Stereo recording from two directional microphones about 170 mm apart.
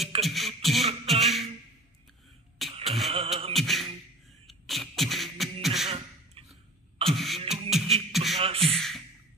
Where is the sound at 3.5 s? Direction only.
Centre (ahead or behind).